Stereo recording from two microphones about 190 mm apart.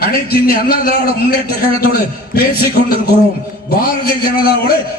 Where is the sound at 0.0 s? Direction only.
55° left (ahead or behind).